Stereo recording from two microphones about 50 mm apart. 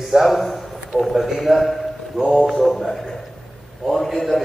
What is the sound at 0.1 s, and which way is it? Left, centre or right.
A man's voice, centre.